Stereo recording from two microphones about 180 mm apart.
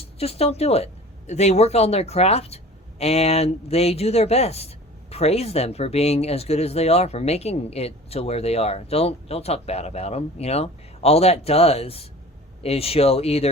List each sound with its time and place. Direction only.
0.0 s speech: 35° left (ahead or behind)